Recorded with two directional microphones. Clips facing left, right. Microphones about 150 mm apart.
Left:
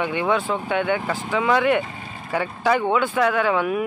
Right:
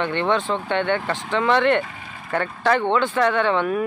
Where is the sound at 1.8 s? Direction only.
25° left (ahead or behind).